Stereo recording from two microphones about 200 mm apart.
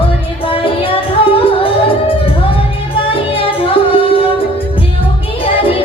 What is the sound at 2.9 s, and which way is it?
Music, 25° left (ahead or behind).